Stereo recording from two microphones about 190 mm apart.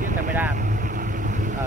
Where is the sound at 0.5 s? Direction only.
50° right (ahead or behind).